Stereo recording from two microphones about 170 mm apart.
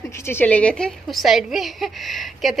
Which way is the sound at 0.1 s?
15° left (ahead or behind).